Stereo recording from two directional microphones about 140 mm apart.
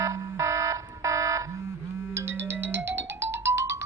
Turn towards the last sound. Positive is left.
turn(degrees=-20)  # may be behind; listen again after turning